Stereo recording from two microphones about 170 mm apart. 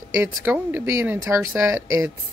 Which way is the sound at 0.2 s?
10° right (ahead or behind).